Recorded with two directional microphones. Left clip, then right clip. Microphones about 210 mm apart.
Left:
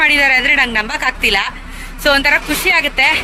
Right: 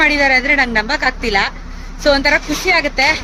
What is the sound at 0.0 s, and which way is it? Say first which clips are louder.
A woman's voice: left 1 dB; 15° right (ahead or behind).